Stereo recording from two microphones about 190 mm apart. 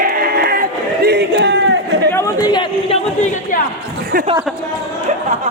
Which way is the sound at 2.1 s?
15° left (ahead or behind).